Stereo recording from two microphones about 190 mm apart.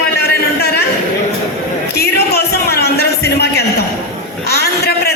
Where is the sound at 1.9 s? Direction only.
55° left (ahead or behind).